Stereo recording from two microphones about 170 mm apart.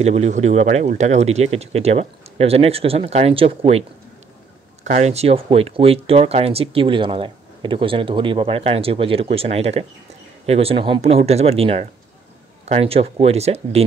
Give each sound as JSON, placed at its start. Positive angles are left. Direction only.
{"t": 0.0, "sound": "speech", "side_deg": -40}
{"t": 4.8, "sound": "speech", "side_deg": -45}